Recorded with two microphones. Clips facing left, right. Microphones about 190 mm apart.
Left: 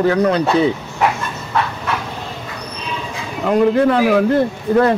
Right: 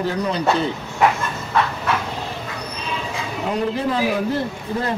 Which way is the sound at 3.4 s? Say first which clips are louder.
Left 9 dB; 60° left (ahead or behind).